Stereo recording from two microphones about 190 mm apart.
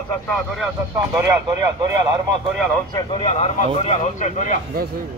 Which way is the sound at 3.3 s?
35° left (ahead or behind).